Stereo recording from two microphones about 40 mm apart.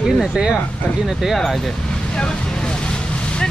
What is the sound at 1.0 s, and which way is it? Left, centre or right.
Speech, centre.